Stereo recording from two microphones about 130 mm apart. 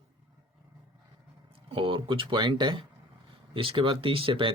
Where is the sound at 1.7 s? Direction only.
40° right (ahead or behind).